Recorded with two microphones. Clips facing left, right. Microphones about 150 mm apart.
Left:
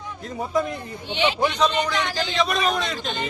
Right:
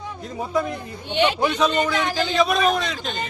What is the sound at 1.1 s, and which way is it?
Speech, 50° right (ahead or behind).